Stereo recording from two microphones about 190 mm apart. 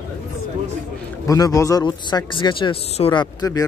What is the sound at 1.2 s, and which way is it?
Speech, 20° left (ahead or behind).